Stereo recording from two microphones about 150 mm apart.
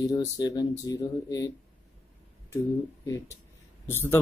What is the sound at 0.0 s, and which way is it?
Speech, 25° left (ahead or behind).